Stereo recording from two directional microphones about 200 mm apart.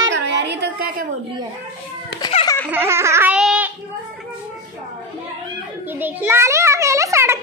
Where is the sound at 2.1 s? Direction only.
20° left (ahead or behind).